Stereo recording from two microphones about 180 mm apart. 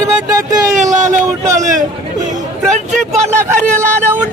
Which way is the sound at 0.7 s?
45° right (ahead or behind).